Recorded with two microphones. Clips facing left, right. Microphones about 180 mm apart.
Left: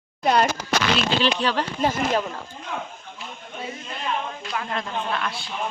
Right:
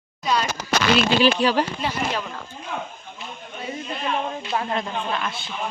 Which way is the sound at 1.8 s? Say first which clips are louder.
Left 4 dB; 45° left (ahead or behind).